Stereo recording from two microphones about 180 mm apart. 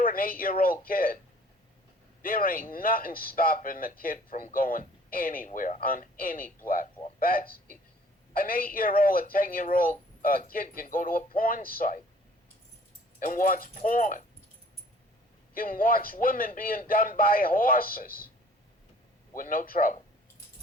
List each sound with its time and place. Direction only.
0.0 s speech: 50° left (ahead or behind)
2.2 s speech: 50° left (ahead or behind)
13.1 s speech: 50° left (ahead or behind)
15.5 s speech: 50° left (ahead or behind)
19.4 s speech: 50° left (ahead or behind)